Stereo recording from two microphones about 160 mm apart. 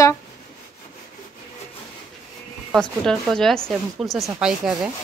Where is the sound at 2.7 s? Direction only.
Centre (ahead or behind).